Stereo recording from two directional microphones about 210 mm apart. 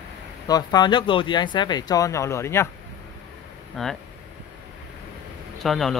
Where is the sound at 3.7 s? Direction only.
Centre (ahead or behind).